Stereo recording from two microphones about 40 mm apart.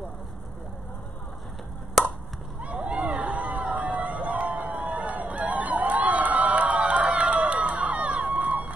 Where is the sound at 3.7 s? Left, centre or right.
Right.